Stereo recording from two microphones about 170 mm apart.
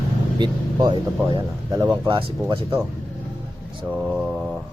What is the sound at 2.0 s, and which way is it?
Speech, 30° right (ahead or behind).